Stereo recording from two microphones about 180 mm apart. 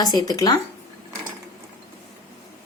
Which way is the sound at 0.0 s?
20° left (ahead or behind).